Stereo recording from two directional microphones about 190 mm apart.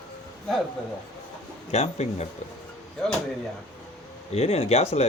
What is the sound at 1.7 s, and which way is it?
Speech, 35° left (ahead or behind).